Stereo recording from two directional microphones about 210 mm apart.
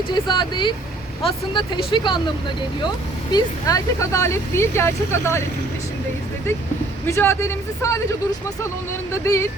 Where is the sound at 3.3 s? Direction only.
15° left (ahead or behind).